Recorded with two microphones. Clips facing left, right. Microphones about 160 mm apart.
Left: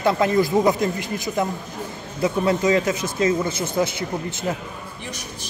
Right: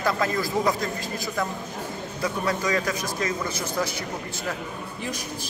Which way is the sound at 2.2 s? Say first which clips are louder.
Left 7 dB; 25° left (ahead or behind).